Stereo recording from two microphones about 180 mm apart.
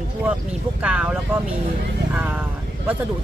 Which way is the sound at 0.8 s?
5° right (ahead or behind).